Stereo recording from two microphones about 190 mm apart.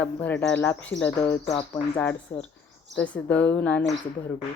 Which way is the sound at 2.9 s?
5° left (ahead or behind).